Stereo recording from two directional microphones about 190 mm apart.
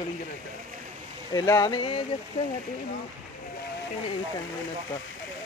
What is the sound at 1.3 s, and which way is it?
Speech, 20° left (ahead or behind).